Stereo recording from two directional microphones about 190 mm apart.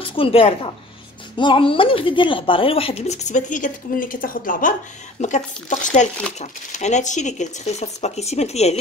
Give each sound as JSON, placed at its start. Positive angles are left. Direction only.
{"t": 0.0, "sound": "a woman's voice", "side_deg": 30}